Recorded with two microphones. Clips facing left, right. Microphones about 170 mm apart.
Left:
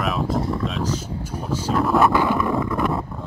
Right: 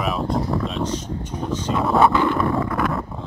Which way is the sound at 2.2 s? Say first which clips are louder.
Right 1 dB; 15° left (ahead or behind).